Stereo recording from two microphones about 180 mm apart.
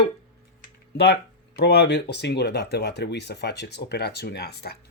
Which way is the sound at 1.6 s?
65° left (ahead or behind).